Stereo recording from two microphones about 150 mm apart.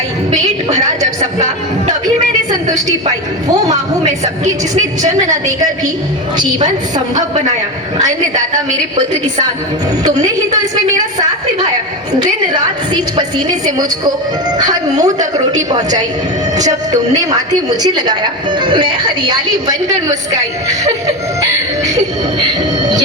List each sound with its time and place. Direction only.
2.0 s speech: 25° right (ahead or behind)
3.7 s a woman's voice: 50° right (ahead or behind)
6.3 s a woman's voice: 30° right (ahead or behind)
10.0 s a woman's voice: 25° right (ahead or behind)
12.9 s a woman's voice: 30° right (ahead or behind)
14.6 s a woman's voice: 25° right (ahead or behind)
17.2 s a woman's voice: 25° right (ahead or behind)
22.4 s train: 30° right (ahead or behind)